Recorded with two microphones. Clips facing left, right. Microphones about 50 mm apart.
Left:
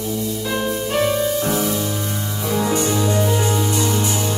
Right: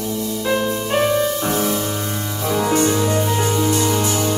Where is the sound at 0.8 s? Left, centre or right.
Centre.